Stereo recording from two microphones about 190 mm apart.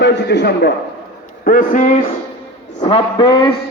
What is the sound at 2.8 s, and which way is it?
Speech, 25° left (ahead or behind).